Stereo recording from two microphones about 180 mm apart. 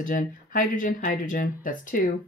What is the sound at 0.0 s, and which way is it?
Speech, 50° left (ahead or behind).